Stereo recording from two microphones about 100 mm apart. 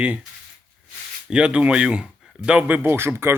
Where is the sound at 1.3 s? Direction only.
10° right (ahead or behind).